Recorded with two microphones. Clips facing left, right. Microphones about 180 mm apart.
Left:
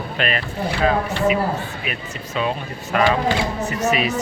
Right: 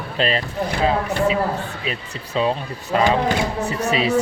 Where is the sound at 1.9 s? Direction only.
30° right (ahead or behind).